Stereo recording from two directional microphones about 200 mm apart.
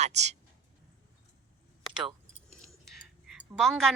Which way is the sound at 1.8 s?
Centre (ahead or behind).